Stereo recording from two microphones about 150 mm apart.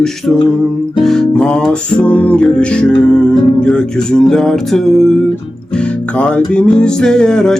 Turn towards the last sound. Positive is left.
turn(degrees=5)  # may be behind; listen again after turning